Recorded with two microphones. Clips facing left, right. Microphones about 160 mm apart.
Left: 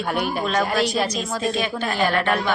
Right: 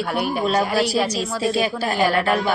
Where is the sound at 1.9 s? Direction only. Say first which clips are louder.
Right 2 dB; 10° right (ahead or behind).